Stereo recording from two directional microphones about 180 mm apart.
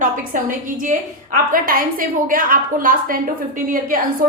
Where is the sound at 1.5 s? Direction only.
50° right (ahead or behind).